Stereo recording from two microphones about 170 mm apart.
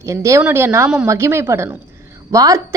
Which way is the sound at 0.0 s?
15° right (ahead or behind).